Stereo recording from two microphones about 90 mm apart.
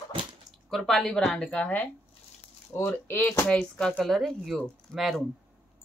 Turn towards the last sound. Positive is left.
turn(degrees=0)  # may be behind; listen again after turning